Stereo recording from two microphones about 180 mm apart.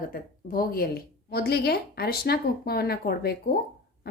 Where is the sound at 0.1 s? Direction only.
55° left (ahead or behind).